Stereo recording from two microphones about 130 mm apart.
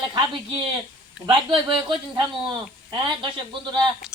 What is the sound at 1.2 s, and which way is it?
Speech, 40° right (ahead or behind).